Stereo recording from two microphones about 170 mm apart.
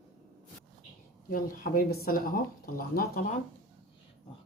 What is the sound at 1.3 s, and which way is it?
Speech, 55° left (ahead or behind).